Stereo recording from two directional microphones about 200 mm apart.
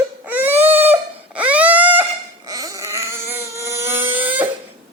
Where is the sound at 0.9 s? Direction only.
5° right (ahead or behind).